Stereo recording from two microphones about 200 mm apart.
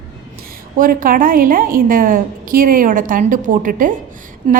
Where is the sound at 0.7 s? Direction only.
45° right (ahead or behind).